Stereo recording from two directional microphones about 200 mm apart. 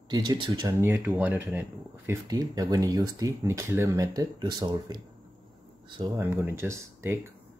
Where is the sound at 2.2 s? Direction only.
20° right (ahead or behind).